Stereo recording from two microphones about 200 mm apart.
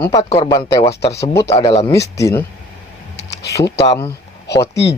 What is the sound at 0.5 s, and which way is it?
Speech, 20° left (ahead or behind).